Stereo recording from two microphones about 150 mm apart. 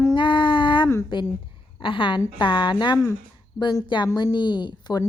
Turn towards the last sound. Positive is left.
turn(degrees=30)  # may be behind; listen again after turning